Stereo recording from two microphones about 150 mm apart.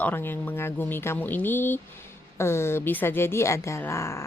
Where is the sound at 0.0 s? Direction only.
15° left (ahead or behind).